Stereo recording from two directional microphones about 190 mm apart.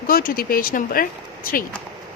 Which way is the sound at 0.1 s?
50° left (ahead or behind).